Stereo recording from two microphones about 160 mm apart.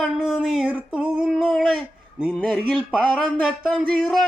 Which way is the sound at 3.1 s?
5° left (ahead or behind).